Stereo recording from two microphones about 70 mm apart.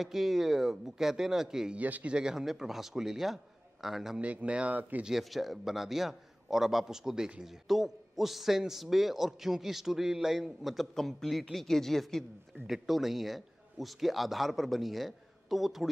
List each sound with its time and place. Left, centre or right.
0.0 s a man's voice: centre
1.8 s speech: right
2.1 s a man's voice: centre
4.2 s speech: centre
5.0 s a man's voice: centre